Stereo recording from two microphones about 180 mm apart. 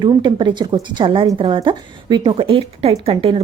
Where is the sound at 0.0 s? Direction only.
25° right (ahead or behind).